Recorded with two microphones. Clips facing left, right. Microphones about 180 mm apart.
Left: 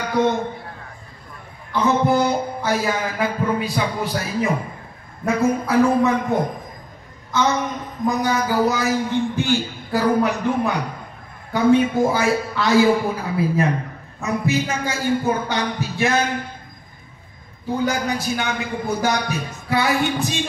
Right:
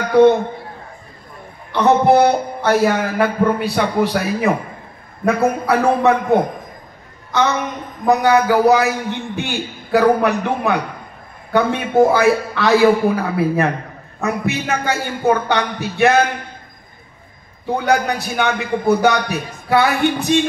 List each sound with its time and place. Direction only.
0.1 s a woman's voice: 60° right (ahead or behind)
1.7 s music: 65° right (ahead or behind)
5.2 s a man's voice: 65° right (ahead or behind)
7.3 s a sound: 65° right (ahead or behind)
8.1 s a man's voice: 65° right (ahead or behind)
17.6 s a man's voice: 65° right (ahead or behind)